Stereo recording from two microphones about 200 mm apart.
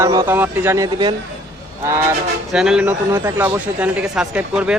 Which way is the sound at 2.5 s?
5° right (ahead or behind).